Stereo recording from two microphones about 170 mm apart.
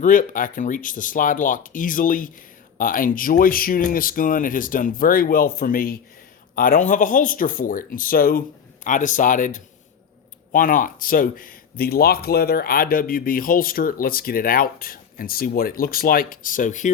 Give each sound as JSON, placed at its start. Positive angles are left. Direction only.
{"t": 0.0, "sound": "speech", "side_deg": 50}